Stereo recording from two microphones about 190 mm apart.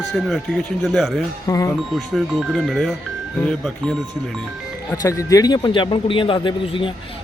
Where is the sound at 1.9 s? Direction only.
Centre (ahead or behind).